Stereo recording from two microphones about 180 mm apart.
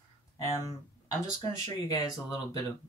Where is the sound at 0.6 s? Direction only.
20° left (ahead or behind).